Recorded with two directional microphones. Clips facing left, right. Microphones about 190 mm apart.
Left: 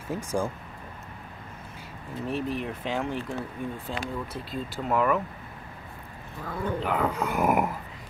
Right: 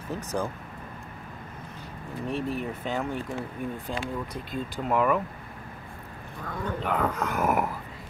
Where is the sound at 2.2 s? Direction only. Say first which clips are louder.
Even; centre (ahead or behind).